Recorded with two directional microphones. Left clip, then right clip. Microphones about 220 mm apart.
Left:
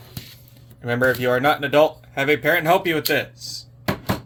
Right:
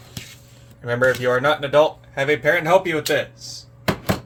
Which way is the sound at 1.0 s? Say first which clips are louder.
Right 1 dB; 35° left (ahead or behind).